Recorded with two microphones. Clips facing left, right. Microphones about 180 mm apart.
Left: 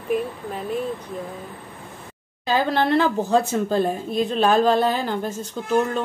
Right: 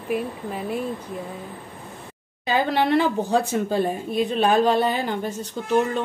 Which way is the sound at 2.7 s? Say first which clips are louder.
Even; 10° right (ahead or behind).